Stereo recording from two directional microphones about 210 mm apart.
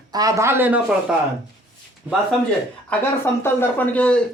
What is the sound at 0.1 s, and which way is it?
Speech, 15° right (ahead or behind).